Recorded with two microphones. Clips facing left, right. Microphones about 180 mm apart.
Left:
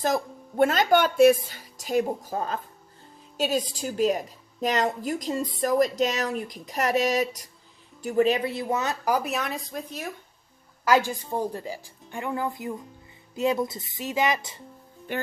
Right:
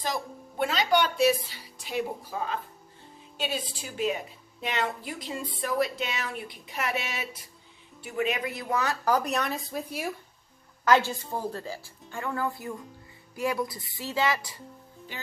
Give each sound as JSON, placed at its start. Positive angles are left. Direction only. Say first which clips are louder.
{"t": 0.0, "sound": "a woman's voice", "louder": "left 7 dB", "side_deg": 50}
{"t": 9.1, "sound": "speech", "louder": "even", "side_deg": 5}
{"t": 10.9, "sound": "speech", "louder": "left 1 dB", "side_deg": 15}
{"t": 15.1, "sound": "speech", "louder": "left 12 dB", "side_deg": 55}